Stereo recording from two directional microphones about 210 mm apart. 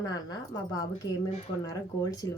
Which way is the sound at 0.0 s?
20° left (ahead or behind).